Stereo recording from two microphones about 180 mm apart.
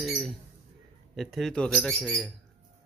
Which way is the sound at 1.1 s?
Centre (ahead or behind).